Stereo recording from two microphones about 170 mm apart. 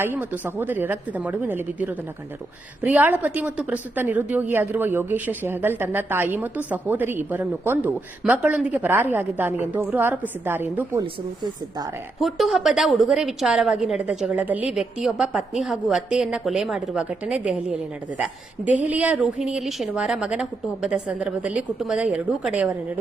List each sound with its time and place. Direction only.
0.0 s a woman's voice: 10° right (ahead or behind)
11.0 s speech: 25° right (ahead or behind)
12.2 s a woman's voice: centre (ahead or behind)
18.8 s a woman's voice: 10° right (ahead or behind)